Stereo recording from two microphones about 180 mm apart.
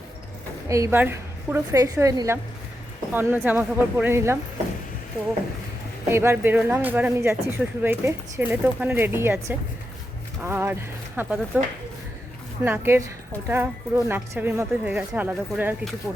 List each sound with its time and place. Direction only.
0.7 s speech: 15° right (ahead or behind)
6.1 s speech: 15° right (ahead or behind)
12.6 s speech: 10° right (ahead or behind)